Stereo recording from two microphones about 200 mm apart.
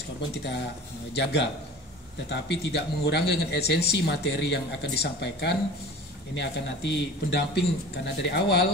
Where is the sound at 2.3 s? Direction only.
60° left (ahead or behind).